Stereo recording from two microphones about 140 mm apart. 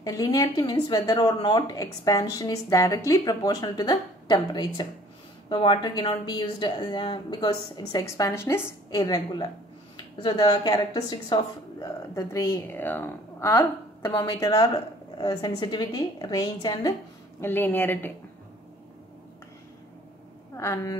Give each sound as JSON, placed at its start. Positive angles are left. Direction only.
{"t": 0.0, "sound": "a woman's voice", "side_deg": 20}
{"t": 9.0, "sound": "a woman's voice", "side_deg": 30}
{"t": 17.4, "sound": "speech", "side_deg": 15}
{"t": 20.5, "sound": "a woman's voice", "side_deg": 20}